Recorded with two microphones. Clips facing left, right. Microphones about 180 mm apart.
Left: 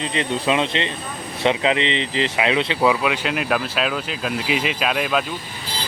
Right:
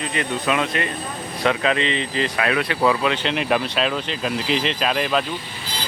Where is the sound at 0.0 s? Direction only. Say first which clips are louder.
Left 2 dB; 25° left (ahead or behind).